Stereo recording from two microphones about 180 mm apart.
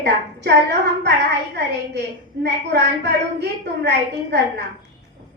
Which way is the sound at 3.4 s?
70° right (ahead or behind).